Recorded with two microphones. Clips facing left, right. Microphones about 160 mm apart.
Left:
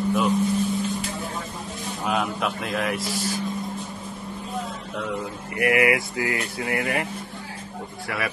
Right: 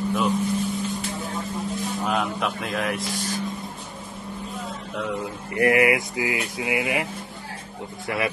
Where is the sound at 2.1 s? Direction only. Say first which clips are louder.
Left 2 dB; centre (ahead or behind).